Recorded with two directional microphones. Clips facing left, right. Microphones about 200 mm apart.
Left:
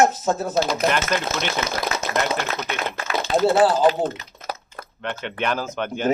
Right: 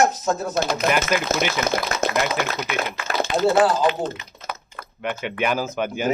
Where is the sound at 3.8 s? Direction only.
45° left (ahead or behind).